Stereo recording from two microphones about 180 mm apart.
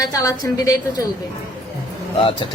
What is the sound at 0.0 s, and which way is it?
A woman's voice, 20° left (ahead or behind).